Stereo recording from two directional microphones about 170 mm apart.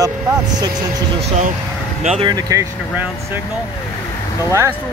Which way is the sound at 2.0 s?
40° right (ahead or behind).